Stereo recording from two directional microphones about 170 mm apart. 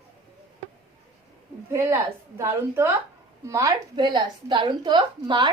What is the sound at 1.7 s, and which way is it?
A woman's voice, 15° right (ahead or behind).